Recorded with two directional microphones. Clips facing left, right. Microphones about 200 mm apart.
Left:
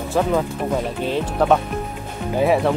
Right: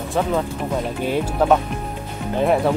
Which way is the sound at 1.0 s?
5° right (ahead or behind).